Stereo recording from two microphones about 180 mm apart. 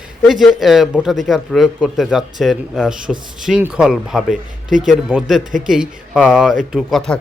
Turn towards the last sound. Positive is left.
turn(degrees=0)  # may be behind; listen again after turning